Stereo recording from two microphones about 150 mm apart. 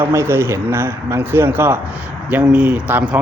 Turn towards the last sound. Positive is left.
turn(degrees=-10)  # may be behind; listen again after turning